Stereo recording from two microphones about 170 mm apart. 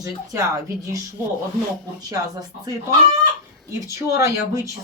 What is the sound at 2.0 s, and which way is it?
Speech, 20° right (ahead or behind).